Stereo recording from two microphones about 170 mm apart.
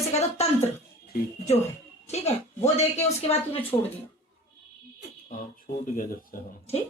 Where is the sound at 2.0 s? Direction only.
40° left (ahead or behind).